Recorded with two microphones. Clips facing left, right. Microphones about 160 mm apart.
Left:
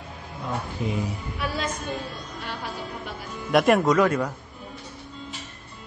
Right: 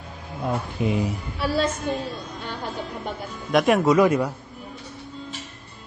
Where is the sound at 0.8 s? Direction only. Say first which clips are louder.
Right 5 dB; 70° right (ahead or behind).